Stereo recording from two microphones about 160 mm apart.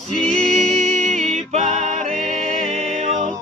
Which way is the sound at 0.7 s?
45° right (ahead or behind).